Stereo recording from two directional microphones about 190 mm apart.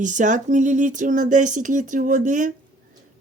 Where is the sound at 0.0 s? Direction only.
40° right (ahead or behind).